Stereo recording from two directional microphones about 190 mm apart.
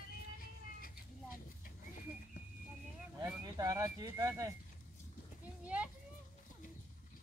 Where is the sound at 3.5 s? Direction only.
15° right (ahead or behind).